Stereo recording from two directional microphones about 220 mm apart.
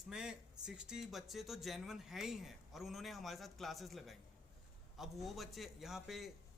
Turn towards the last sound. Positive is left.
turn(degrees=0)  # may be behind; listen again after turning